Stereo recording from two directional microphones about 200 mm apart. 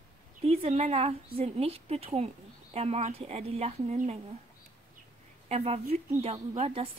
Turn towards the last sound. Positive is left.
turn(degrees=-25)  # may be behind; listen again after turning